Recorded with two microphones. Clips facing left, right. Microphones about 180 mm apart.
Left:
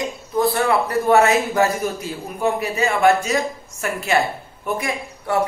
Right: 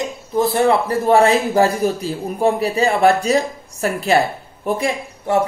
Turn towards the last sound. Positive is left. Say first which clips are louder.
# right 4 dB
turn(degrees=-25)  # may be behind; listen again after turning